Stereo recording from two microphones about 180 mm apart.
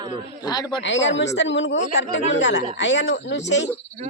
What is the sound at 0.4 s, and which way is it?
Speech, 20° left (ahead or behind).